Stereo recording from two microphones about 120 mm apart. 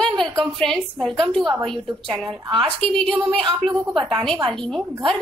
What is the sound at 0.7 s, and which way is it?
A woman's voice, centre (ahead or behind).